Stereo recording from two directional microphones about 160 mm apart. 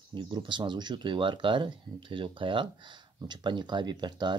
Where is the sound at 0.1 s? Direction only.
30° right (ahead or behind).